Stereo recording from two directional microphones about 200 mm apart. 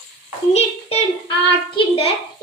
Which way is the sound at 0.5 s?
30° left (ahead or behind).